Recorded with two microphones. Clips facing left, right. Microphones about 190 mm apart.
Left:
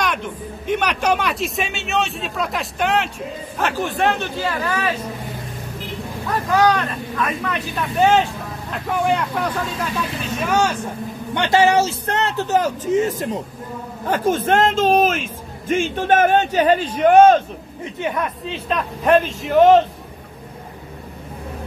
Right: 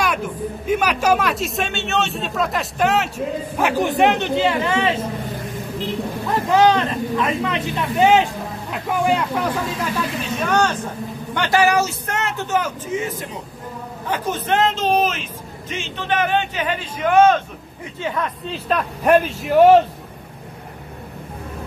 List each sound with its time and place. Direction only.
0.0 s a man's voice: 5° right (ahead or behind); by 5.0 s 25° right (ahead or behind)
6.5 s speech: 25° right (ahead or behind)
8.8 s a man's voice: 5° right (ahead or behind)
10.1 s speech: 5° left (ahead or behind)
11.3 s a man's voice: 25° left (ahead or behind)
17.8 s speech: 20° left (ahead or behind)
18.5 s a man's voice: centre (ahead or behind)